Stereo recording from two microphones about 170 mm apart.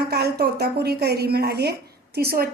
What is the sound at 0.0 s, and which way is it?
A woman's voice, 70° right (ahead or behind).